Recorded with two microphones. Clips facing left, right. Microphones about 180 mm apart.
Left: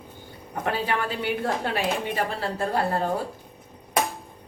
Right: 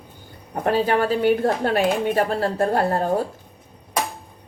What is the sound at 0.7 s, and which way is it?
Speech, 40° right (ahead or behind).